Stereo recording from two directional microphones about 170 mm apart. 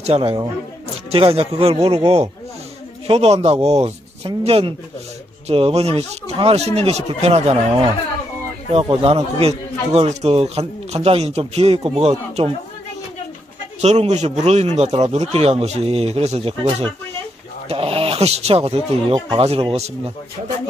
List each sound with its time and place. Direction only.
0.0 s speech: 35° right (ahead or behind)
3.1 s speech: 35° right (ahead or behind)
13.7 s speech: 40° right (ahead or behind)